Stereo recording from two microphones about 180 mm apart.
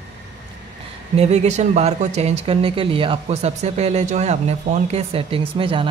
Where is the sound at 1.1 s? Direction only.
40° right (ahead or behind).